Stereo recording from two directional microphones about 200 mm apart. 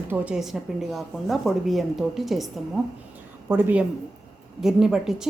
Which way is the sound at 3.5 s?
10° right (ahead or behind).